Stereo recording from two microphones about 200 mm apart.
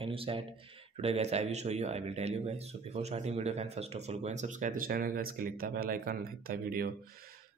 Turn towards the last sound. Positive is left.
turn(degrees=-45)  # may be behind; listen again after turning